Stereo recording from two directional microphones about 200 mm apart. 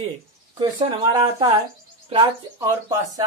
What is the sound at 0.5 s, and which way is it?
Speech, 20° right (ahead or behind).